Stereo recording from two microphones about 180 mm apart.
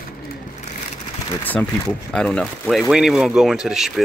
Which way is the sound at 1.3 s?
10° left (ahead or behind).